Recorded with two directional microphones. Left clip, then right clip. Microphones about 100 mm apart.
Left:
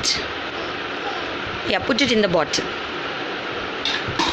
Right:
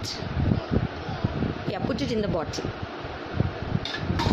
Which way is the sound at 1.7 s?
5° right (ahead or behind).